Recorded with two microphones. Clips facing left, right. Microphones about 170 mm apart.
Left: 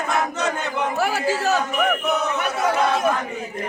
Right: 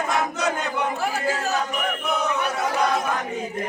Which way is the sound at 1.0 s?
80° left.